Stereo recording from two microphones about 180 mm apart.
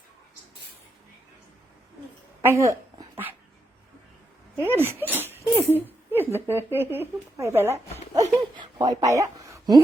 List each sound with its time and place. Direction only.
2.4 s dog: 15° right (ahead or behind)
4.5 s speech: 15° right (ahead or behind)
8.1 s a sound: 20° right (ahead or behind)